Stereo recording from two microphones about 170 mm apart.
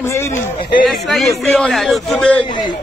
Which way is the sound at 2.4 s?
25° left (ahead or behind).